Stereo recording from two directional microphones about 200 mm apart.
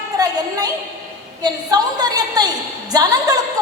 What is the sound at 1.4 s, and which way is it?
A woman's voice, 20° right (ahead or behind).